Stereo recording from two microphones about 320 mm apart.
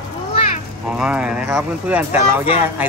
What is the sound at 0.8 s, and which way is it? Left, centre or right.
Speech, centre.